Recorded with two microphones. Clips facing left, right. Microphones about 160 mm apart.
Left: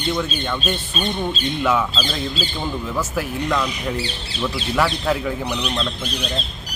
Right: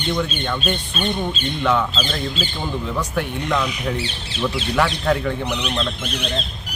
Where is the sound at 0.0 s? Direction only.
Centre (ahead or behind).